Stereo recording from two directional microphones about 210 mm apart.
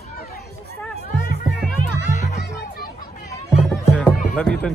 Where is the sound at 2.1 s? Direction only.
35° left (ahead or behind).